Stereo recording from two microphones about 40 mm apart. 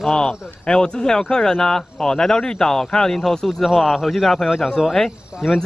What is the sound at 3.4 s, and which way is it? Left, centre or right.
Speech, centre.